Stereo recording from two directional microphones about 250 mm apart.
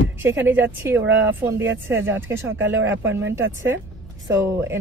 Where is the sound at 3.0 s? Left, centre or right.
Right.